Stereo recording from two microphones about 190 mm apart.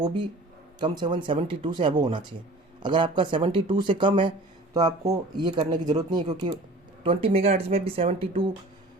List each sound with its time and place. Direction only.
0.0 s speech: 25° right (ahead or behind)